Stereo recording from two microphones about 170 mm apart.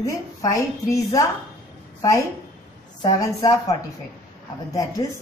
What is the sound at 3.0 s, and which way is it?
Speech, 20° left (ahead or behind).